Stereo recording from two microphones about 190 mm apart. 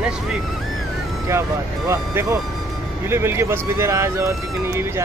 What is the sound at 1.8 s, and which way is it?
Speech, 15° right (ahead or behind).